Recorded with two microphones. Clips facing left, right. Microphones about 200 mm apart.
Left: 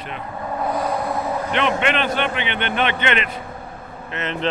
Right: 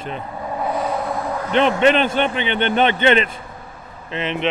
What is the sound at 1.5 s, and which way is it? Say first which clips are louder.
A man's voice: right 7 dB; 35° right (ahead or behind).